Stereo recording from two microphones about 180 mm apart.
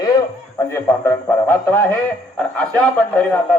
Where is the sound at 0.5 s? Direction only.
15° left (ahead or behind).